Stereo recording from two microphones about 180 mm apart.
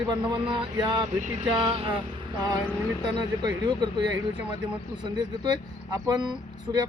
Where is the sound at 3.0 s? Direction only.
25° right (ahead or behind).